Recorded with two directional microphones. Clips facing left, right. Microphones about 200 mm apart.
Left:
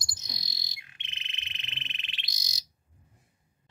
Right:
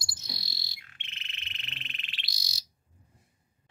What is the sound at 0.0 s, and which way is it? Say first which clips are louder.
Frog: right 2 dB; 20° left (ahead or behind).